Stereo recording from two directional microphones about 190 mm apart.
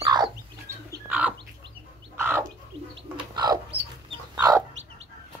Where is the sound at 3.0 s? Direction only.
25° right (ahead or behind).